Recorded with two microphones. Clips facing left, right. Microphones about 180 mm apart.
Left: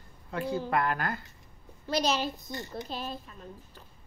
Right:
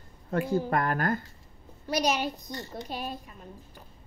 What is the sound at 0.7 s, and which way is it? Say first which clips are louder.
Speech: right 2 dB; 45° right (ahead or behind).